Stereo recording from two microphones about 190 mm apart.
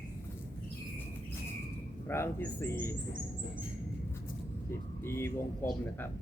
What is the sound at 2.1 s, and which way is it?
Speech, 10° left (ahead or behind).